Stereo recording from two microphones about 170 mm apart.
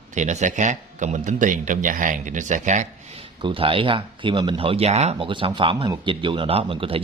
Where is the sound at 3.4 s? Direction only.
30° right (ahead or behind).